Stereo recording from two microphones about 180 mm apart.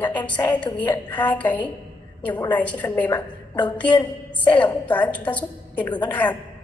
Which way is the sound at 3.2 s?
25° left (ahead or behind).